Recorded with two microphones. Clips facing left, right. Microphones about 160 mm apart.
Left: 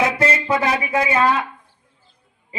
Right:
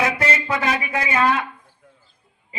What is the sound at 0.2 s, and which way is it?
Speech, 30° left (ahead or behind).